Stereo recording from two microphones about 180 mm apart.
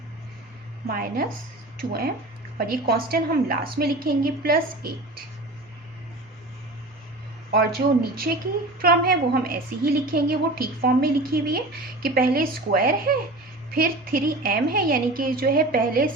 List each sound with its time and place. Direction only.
0.9 s a woman's voice: 55° right (ahead or behind)
7.5 s a woman's voice: 55° right (ahead or behind)